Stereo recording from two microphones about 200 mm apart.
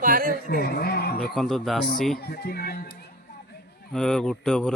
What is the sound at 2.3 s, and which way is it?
Speech, 50° left (ahead or behind).